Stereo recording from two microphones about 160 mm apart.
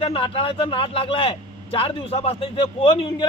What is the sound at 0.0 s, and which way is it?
A man's voice, 35° left (ahead or behind).